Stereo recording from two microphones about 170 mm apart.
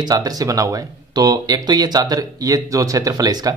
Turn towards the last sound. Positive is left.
turn(degrees=-20)  # may be behind; listen again after turning